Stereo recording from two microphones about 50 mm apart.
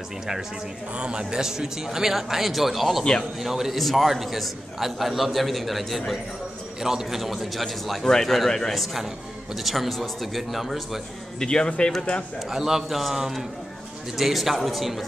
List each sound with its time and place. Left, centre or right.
0.9 s a man's voice: centre
11.3 s a man's voice: centre
12.4 s a man's voice: centre